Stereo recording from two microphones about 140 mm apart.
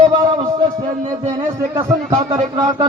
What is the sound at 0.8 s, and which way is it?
Speech, 45° right (ahead or behind).